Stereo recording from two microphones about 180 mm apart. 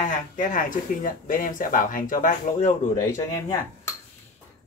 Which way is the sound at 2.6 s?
15° left (ahead or behind).